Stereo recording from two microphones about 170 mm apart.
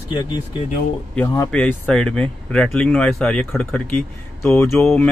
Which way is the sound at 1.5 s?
5° left (ahead or behind).